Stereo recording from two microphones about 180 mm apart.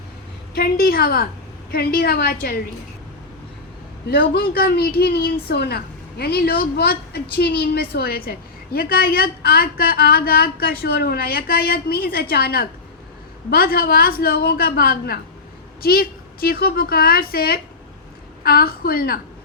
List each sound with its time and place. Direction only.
0.5 s a woman's voice: 55° left (ahead or behind)
4.1 s a woman's voice: 60° left (ahead or behind)